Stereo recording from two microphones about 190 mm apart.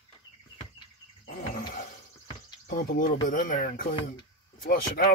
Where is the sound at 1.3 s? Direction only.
45° left (ahead or behind).